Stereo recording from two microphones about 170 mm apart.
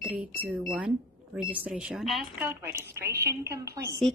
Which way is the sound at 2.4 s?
15° right (ahead or behind).